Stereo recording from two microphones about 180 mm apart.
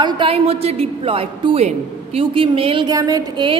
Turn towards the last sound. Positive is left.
turn(degrees=-25)  # may be behind; listen again after turning